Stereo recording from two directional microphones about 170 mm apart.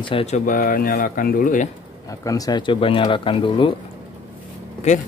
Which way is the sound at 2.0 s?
20° left (ahead or behind).